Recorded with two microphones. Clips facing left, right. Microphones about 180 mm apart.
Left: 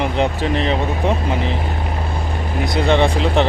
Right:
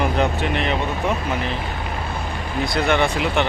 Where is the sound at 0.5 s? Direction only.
30° left (ahead or behind).